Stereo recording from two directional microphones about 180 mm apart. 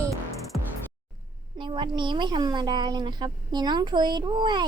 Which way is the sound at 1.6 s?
25° right (ahead or behind).